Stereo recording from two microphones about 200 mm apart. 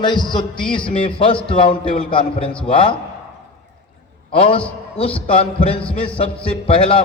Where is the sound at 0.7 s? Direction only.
25° left (ahead or behind).